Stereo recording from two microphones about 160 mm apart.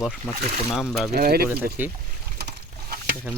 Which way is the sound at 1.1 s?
75° right (ahead or behind).